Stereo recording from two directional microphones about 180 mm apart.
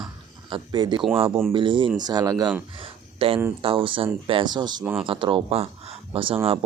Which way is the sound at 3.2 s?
30° right (ahead or behind).